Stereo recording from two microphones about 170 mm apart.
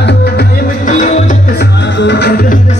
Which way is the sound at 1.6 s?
90° left.